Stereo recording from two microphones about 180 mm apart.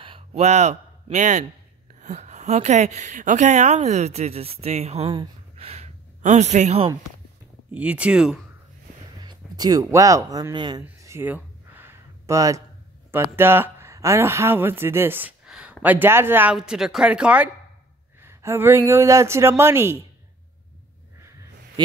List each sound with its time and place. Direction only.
0.0 s a sound: 30° right (ahead or behind)
2.0 s speech: 40° right (ahead or behind)
7.7 s speech: 10° right (ahead or behind)
9.2 s speech: 20° right (ahead or behind)
10.8 s a sound: 15° right (ahead or behind)
13.1 s speech: 10° right (ahead or behind)
21.8 s speech: 25° right (ahead or behind)